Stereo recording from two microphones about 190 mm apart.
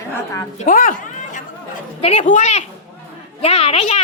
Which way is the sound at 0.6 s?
45° left (ahead or behind).